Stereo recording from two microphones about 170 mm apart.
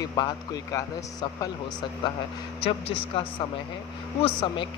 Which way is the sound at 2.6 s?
35° left (ahead or behind).